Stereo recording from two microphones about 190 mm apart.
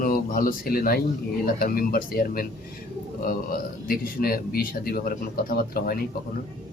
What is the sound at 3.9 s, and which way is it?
A man's voice, 50° left (ahead or behind).